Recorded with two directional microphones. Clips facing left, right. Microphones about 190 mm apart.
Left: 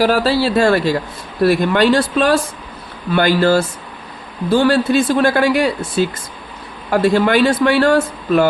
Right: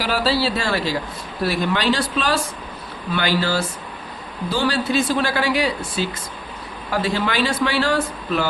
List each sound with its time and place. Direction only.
0.0 s speech: 45° left (ahead or behind)